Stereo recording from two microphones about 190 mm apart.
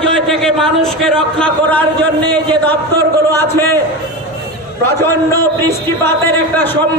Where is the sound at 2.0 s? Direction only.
60° right (ahead or behind).